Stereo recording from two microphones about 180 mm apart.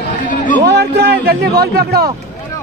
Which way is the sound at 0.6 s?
65° right (ahead or behind).